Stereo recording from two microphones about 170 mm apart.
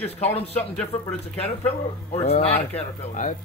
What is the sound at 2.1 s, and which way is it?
Speech, 40° left (ahead or behind).